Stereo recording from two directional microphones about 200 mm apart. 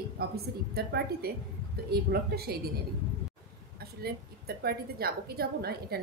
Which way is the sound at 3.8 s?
50° right (ahead or behind).